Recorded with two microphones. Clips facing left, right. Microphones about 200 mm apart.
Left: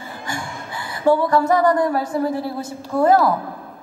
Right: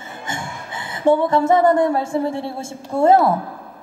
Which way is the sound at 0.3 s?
25° right (ahead or behind).